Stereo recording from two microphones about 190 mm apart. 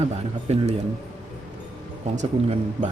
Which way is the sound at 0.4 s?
35° right (ahead or behind).